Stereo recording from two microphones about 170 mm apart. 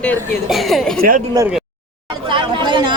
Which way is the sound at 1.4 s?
20° right (ahead or behind).